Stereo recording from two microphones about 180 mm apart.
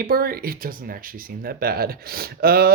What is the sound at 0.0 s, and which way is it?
Speech, 55° right (ahead or behind).